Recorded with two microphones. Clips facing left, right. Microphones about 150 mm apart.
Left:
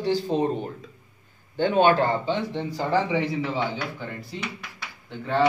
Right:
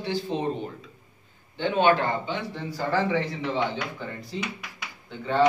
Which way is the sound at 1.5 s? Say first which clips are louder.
Left 2 dB; 45° left (ahead or behind).